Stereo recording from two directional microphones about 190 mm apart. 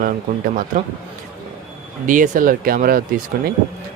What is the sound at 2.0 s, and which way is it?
Speech, 45° right (ahead or behind).